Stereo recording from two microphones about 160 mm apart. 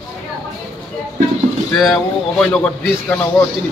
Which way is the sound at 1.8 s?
Centre (ahead or behind).